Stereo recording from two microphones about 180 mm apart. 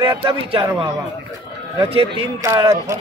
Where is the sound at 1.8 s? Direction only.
30° right (ahead or behind).